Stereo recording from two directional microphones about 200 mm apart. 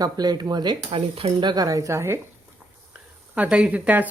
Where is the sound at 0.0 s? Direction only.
20° right (ahead or behind).